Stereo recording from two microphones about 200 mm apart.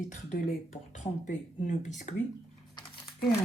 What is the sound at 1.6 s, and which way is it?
Speech, 35° left (ahead or behind).